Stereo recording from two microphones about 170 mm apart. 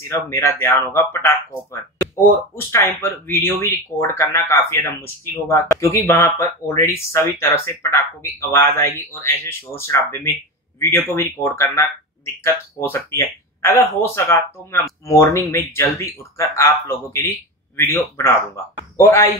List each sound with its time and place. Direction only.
0.3 s speech: 15° left (ahead or behind)